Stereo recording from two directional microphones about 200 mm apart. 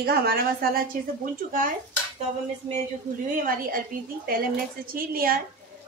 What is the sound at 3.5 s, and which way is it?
A woman's voice, 45° right (ahead or behind).